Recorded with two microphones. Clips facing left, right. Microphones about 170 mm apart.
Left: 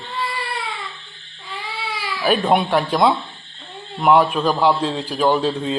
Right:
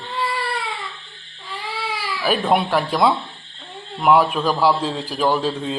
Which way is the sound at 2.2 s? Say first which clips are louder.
Left 2 dB; centre (ahead or behind).